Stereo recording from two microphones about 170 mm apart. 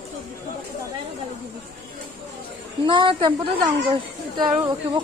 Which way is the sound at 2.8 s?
30° right (ahead or behind).